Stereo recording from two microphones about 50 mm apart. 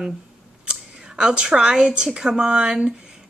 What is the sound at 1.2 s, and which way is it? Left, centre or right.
A woman's voice, centre.